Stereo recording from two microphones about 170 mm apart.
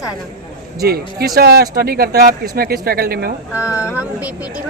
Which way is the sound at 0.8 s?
65° right (ahead or behind).